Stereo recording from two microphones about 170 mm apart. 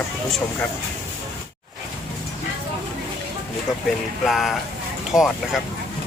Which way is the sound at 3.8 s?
Centre (ahead or behind).